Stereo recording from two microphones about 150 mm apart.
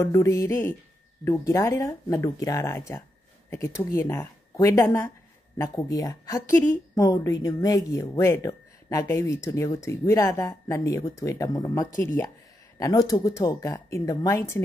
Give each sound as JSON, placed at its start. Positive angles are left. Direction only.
{"t": 0.0, "sound": "speech", "side_deg": 20}
{"t": 11.9, "sound": "speech", "side_deg": 60}
{"t": 12.7, "sound": "speech", "side_deg": 25}